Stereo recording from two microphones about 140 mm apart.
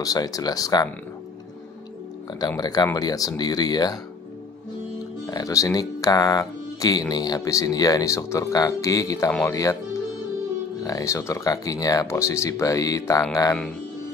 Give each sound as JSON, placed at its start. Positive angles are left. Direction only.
{"t": 0.0, "sound": "speech", "side_deg": 25}
{"t": 2.4, "sound": "speech", "side_deg": 30}
{"t": 5.2, "sound": "speech", "side_deg": 25}
{"t": 10.8, "sound": "speech", "side_deg": 25}